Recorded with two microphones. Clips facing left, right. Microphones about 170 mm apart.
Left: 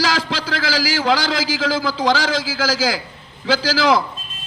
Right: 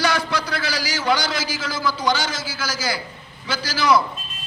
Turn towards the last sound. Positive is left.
turn(degrees=90)